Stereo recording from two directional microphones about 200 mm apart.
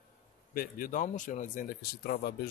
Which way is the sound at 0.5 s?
45° left (ahead or behind).